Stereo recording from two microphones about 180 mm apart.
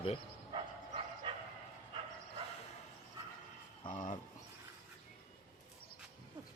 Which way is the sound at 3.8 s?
45° left (ahead or behind).